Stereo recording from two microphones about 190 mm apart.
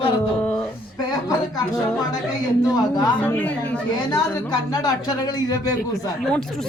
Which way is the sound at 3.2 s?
10° left (ahead or behind).